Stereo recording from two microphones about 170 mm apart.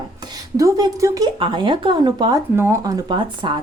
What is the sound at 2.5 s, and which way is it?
Speech, 15° right (ahead or behind).